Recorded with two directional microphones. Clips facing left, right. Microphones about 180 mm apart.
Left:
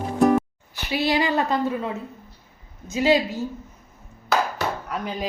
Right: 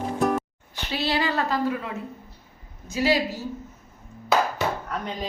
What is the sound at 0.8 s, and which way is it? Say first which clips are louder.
A woman's voice: left 3 dB; 15° left (ahead or behind).